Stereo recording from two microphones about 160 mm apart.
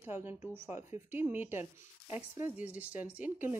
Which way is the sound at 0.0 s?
15° right (ahead or behind).